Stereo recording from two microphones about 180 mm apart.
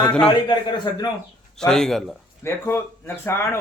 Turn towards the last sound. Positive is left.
turn(degrees=15)  # may be behind; listen again after turning